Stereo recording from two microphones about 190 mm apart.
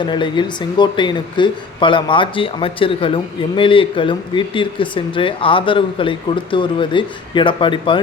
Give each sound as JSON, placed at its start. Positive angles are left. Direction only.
{"t": 0.0, "sound": "speech", "side_deg": 25}